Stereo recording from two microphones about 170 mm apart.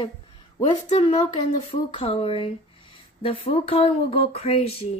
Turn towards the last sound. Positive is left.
turn(degrees=35)  # may be behind; listen again after turning